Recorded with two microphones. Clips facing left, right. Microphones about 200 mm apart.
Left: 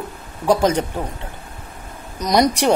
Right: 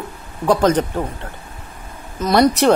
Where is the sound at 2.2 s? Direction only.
15° left (ahead or behind).